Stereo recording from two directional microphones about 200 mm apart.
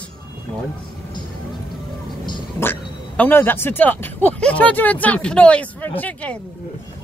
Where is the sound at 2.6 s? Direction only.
10° left (ahead or behind).